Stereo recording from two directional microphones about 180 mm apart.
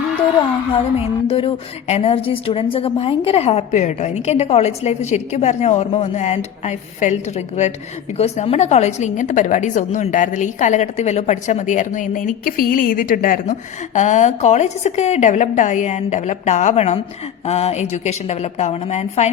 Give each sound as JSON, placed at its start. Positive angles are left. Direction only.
{"t": 0.7, "sound": "a woman's voice", "side_deg": 30}